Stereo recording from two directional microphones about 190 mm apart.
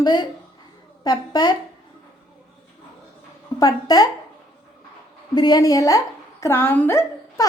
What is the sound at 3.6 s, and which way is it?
Speech, 20° left (ahead or behind).